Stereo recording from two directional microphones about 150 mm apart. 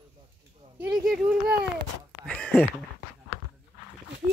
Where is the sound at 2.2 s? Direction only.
5° left (ahead or behind).